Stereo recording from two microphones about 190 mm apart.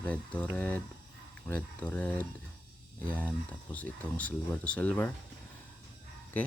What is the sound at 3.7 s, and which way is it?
Speech, 10° left (ahead or behind).